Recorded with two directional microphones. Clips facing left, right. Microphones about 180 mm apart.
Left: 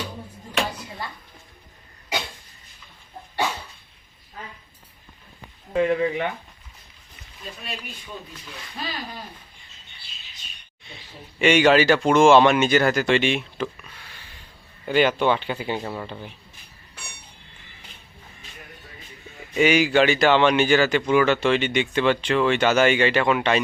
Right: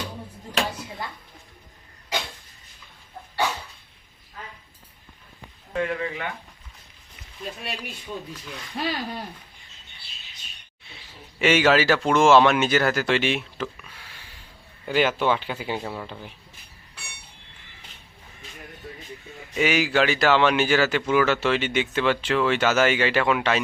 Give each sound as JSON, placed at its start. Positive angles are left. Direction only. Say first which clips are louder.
{"t": 5.7, "sound": "speech", "louder": "left 6 dB", "side_deg": 20}
{"t": 8.8, "sound": "speech", "louder": "right 5 dB", "side_deg": -65}
{"t": 11.3, "sound": "speech", "louder": "left 2 dB", "side_deg": -5}
{"t": 14.8, "sound": "speech", "louder": "left 2 dB", "side_deg": -5}
{"t": 19.5, "sound": "speech", "louder": "left 4 dB", "side_deg": 0}